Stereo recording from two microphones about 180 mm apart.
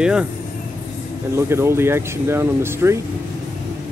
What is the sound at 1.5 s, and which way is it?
Speech, 15° right (ahead or behind).